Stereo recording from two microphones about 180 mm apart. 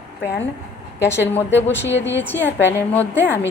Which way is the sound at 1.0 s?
15° left (ahead or behind).